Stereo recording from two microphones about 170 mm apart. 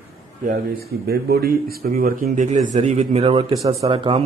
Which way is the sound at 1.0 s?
65° right (ahead or behind).